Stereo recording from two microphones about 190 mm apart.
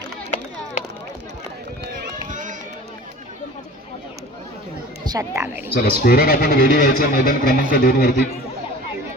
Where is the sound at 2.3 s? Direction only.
40° right (ahead or behind).